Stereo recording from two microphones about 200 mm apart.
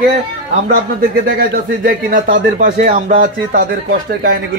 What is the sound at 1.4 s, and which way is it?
A man's voice, 50° right (ahead or behind).